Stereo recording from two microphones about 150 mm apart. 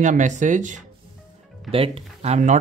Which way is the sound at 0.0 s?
55° right (ahead or behind).